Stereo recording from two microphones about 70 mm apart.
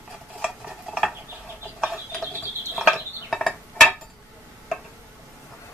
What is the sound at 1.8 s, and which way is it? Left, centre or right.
Ratchet, centre.